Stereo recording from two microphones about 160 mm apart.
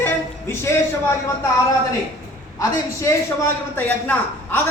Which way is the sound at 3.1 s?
15° left (ahead or behind).